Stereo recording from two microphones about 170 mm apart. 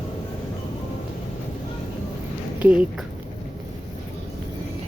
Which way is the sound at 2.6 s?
10° right (ahead or behind).